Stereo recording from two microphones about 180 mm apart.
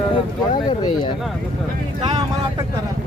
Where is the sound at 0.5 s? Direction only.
25° left (ahead or behind).